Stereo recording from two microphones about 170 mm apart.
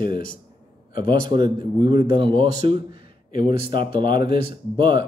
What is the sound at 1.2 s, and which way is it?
A man's voice, 25° right (ahead or behind).